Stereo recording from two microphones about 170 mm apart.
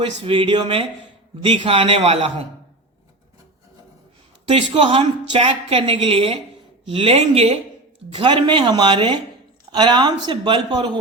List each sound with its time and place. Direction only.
0.2 s a woman's voice: 30° right (ahead or behind)
4.8 s a woman's voice: 30° right (ahead or behind)